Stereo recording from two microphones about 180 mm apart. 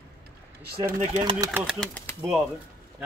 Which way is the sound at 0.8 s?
45° right (ahead or behind).